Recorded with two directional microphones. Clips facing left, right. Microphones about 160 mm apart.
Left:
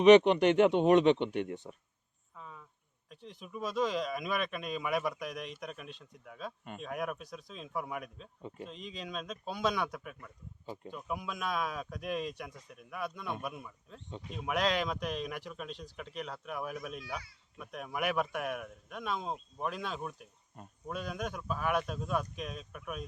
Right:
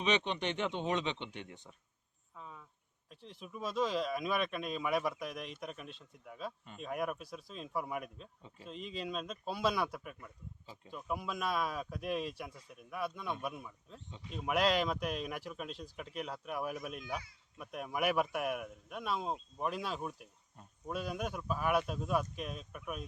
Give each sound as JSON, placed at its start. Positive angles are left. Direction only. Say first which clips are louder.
{"t": 0.0, "sound": "speech", "louder": "left 13 dB", "side_deg": 60}
{"t": 2.3, "sound": "cricket", "louder": "left 1 dB", "side_deg": -5}
{"t": 3.1, "sound": "speech", "louder": "left 3 dB", "side_deg": 0}
{"t": 8.4, "sound": "speech", "louder": "left 11 dB", "side_deg": 60}
{"t": 8.6, "sound": "speech", "louder": "right 3 dB", "side_deg": 0}